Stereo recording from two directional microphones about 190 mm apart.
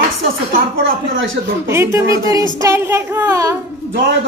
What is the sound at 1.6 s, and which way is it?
Speech, 15° right (ahead or behind).